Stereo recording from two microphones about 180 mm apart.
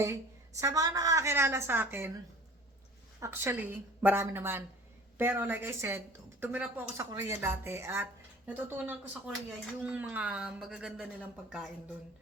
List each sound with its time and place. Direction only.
0.0 s a woman's voice: 15° right (ahead or behind)
3.2 s a woman's voice: 15° right (ahead or behind)